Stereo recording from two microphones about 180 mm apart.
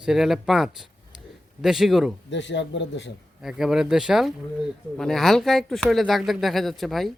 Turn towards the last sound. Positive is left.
turn(degrees=0)  # may be behind; listen again after turning